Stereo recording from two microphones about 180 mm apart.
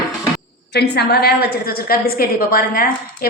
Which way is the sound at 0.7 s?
65° left (ahead or behind).